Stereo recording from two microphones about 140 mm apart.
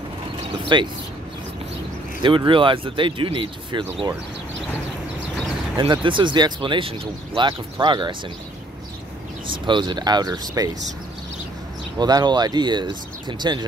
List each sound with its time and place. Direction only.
0.7 s speech: 35° right (ahead or behind)
2.2 s speech: 35° right (ahead or behind)
5.8 s speech: 35° right (ahead or behind)
9.7 s speech: 35° right (ahead or behind)
12.0 s speech: 30° right (ahead or behind)